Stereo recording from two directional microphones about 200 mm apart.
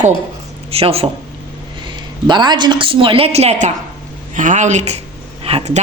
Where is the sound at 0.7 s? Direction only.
30° right (ahead or behind).